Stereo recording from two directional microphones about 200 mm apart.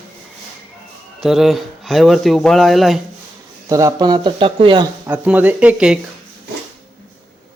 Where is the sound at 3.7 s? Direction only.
15° right (ahead or behind).